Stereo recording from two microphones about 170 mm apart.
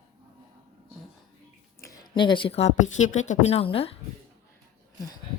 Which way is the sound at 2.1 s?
30° left (ahead or behind).